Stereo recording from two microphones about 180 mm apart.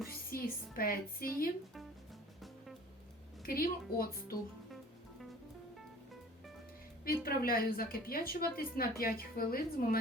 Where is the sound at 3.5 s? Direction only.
55° left (ahead or behind).